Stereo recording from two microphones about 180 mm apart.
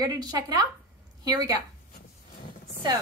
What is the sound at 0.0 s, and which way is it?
A woman's voice, 20° right (ahead or behind).